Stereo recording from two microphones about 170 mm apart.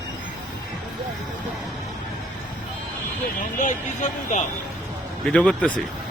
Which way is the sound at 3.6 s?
45° left (ahead or behind).